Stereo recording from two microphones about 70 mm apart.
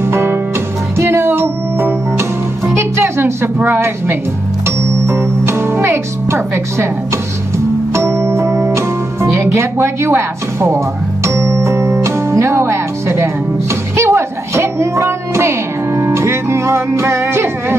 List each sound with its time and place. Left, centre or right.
0.0 s music: right
3.0 s a sound: right
3.6 s a woman's voice: right
7.9 s music: right